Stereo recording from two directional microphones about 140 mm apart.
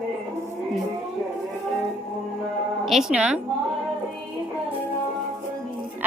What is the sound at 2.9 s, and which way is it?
Speech, 5° right (ahead or behind).